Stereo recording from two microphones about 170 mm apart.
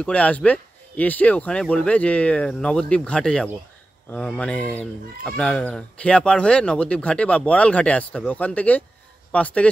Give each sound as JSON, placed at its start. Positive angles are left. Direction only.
{"t": 0.0, "sound": "speech", "side_deg": 5}